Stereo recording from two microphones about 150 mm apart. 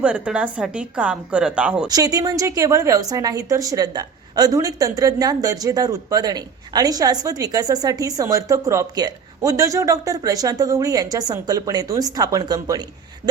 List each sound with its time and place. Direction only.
0.0 s a woman's voice: 5° right (ahead or behind)
1.9 s a woman's voice: 25° right (ahead or behind)